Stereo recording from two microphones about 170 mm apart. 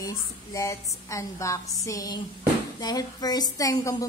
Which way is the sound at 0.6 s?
20° left (ahead or behind).